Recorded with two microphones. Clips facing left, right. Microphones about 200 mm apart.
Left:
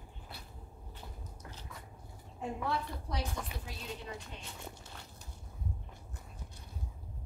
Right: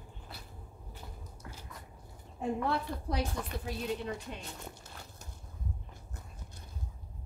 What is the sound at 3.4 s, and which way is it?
Speech, centre (ahead or behind).